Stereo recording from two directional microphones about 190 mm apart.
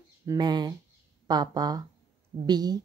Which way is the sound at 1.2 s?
20° right (ahead or behind).